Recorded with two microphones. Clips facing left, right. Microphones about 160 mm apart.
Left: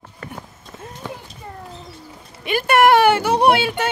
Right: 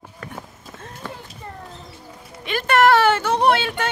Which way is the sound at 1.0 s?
15° left (ahead or behind).